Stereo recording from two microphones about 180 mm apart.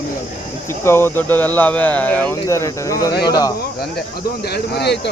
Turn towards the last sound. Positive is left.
turn(degrees=65)  # may be behind; listen again after turning